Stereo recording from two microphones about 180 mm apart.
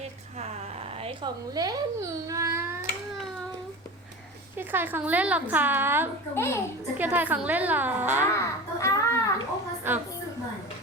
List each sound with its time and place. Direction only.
1.0 s speech: 25° right (ahead or behind)
4.5 s speech: 10° right (ahead or behind)
6.3 s a child's voice: 15° left (ahead or behind)
7.0 s speech: 10° right (ahead or behind)
8.3 s a sound: 15° left (ahead or behind)
9.9 s speech: 10° right (ahead or behind)